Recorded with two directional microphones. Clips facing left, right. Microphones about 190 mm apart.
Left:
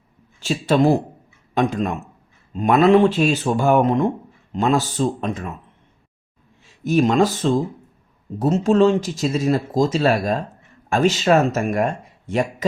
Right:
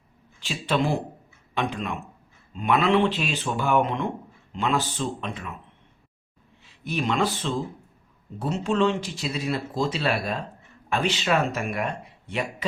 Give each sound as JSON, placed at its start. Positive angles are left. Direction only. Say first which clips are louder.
{"t": 0.3, "sound": "speech", "louder": "left 8 dB", "side_deg": 45}
{"t": 6.8, "sound": "speech", "louder": "left 9 dB", "side_deg": 45}